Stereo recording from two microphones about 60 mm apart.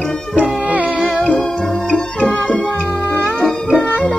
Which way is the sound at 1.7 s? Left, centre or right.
Left.